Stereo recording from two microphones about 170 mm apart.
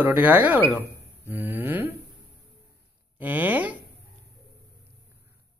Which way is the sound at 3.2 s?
10° right (ahead or behind).